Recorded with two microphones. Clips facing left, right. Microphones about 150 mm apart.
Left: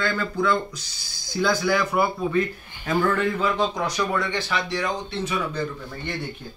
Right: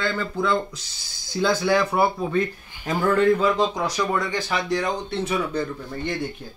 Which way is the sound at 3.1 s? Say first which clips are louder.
Right 5 dB; 35° right (ahead or behind).